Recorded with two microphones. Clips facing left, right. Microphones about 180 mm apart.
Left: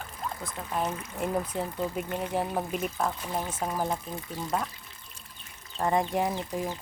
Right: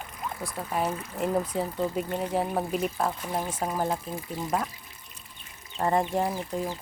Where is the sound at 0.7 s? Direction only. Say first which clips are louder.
Right 2 dB; 10° right (ahead or behind).